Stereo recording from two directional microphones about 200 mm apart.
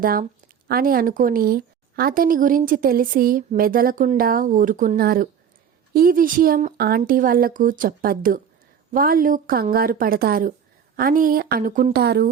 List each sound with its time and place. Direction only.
0.0 s a woman's voice: 45° right (ahead or behind)